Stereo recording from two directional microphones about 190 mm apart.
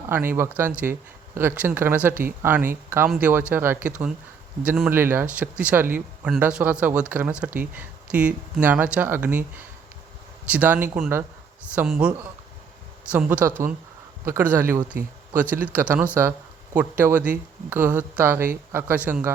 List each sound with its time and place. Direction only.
0.1 s speech: 10° right (ahead or behind)